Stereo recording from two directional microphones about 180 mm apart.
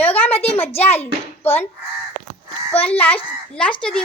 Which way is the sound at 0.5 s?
10° left (ahead or behind).